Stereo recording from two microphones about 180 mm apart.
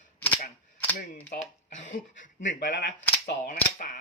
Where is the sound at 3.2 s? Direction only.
45° left (ahead or behind).